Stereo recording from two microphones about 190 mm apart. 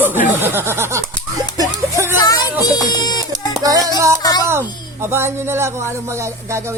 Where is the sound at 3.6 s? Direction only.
20° right (ahead or behind).